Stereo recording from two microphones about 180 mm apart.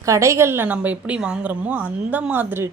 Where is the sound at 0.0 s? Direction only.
15° right (ahead or behind).